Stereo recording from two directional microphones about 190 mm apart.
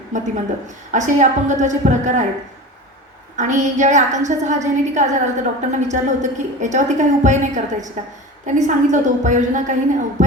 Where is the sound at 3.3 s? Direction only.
40° right (ahead or behind).